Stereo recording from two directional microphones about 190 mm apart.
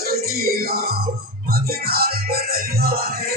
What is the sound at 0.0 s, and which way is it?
Music, 55° right (ahead or behind).